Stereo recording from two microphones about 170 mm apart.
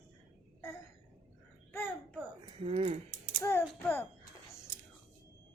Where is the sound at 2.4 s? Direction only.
35° right (ahead or behind).